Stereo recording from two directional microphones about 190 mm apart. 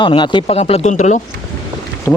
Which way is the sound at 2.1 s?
15° left (ahead or behind).